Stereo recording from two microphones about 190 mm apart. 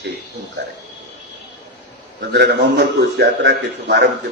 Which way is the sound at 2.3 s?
60° right (ahead or behind).